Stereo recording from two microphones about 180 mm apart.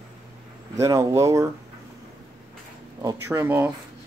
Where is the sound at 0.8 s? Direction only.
20° right (ahead or behind).